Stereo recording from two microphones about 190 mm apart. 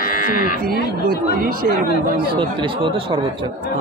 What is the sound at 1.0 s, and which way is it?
Speech, 50° right (ahead or behind).